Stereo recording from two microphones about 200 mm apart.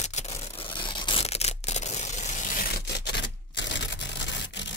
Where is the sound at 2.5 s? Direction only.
50° left (ahead or behind).